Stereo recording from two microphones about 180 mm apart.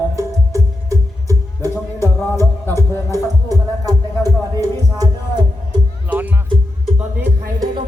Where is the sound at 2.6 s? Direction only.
15° left (ahead or behind).